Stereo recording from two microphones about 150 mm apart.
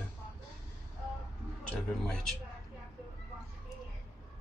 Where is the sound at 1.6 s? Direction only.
5° left (ahead or behind).